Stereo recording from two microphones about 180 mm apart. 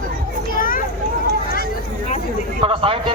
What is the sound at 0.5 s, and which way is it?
Children playing, 50° left (ahead or behind).